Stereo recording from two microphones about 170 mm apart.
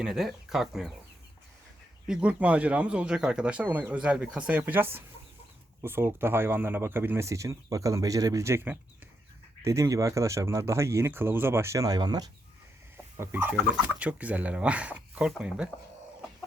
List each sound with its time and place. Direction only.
0.0 s speech: centre (ahead or behind)
2.0 s speech: 10° right (ahead or behind); by 12.3 s 25° right (ahead or behind)
13.1 s speech: 15° right (ahead or behind)